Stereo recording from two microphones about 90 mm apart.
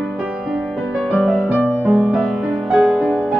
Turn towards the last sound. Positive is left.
turn(degrees=-5)  # may be behind; listen again after turning